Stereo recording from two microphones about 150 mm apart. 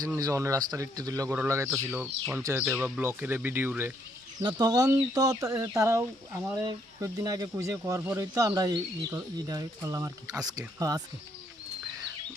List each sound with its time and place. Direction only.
0.2 s speech: 20° right (ahead or behind)
4.4 s speech: 25° right (ahead or behind)